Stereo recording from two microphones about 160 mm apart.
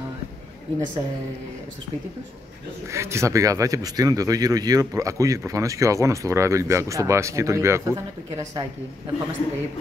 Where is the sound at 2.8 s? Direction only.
15° right (ahead or behind).